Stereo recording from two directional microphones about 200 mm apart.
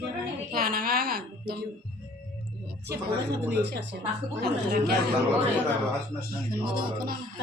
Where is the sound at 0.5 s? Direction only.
45° right (ahead or behind).